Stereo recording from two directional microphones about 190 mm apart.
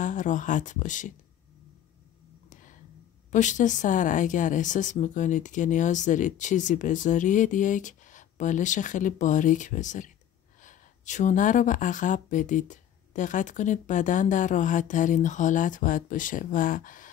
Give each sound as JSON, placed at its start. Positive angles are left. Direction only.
{"t": 0.0, "sound": "speech", "side_deg": 40}
{"t": 3.3, "sound": "speech", "side_deg": 40}